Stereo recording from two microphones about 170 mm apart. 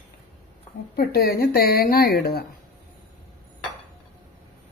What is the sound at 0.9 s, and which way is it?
Speech, 70° left (ahead or behind).